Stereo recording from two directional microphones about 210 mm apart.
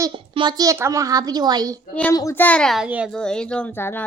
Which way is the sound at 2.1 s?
15° left (ahead or behind).